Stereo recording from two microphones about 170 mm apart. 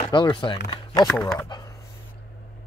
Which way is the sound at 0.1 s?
25° left (ahead or behind).